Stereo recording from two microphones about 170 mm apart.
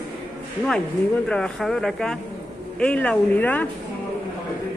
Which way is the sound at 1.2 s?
5° left (ahead or behind).